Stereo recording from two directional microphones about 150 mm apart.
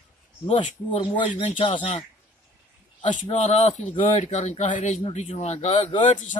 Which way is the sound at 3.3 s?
45° left (ahead or behind).